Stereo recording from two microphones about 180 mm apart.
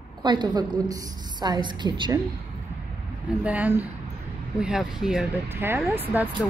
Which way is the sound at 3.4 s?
10° right (ahead or behind).